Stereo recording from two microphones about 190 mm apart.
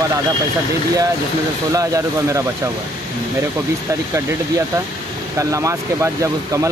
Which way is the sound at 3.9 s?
15° right (ahead or behind).